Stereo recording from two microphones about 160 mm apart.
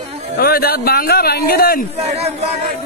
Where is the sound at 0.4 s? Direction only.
70° left (ahead or behind).